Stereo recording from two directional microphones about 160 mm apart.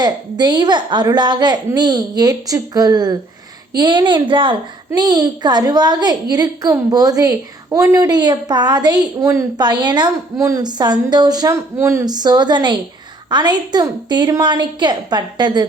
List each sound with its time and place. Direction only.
0.0 s a woman's voice: 25° right (ahead or behind)